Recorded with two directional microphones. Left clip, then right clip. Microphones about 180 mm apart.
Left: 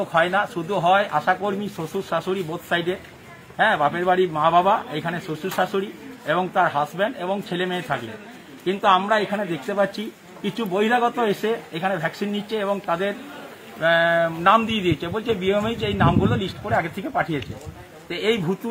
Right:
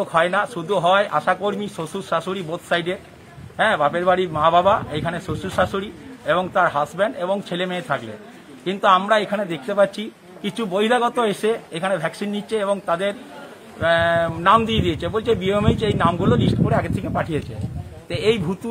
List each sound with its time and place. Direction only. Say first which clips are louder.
0.1 s a man's voice: right 1 dB; 30° right (ahead or behind)